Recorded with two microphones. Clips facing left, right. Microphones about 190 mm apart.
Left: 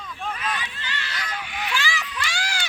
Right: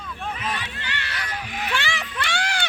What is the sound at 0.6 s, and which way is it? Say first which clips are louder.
Run: right 1 dB; 65° right (ahead or behind).